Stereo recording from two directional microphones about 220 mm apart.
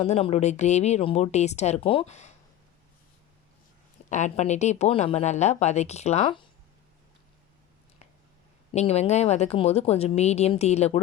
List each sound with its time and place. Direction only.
0.0 s a woman's voice: 30° left (ahead or behind)
4.1 s a woman's voice: 30° left (ahead or behind)
8.7 s a woman's voice: 30° left (ahead or behind)